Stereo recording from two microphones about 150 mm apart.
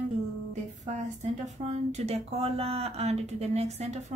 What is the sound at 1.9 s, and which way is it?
Speech, 45° right (ahead or behind).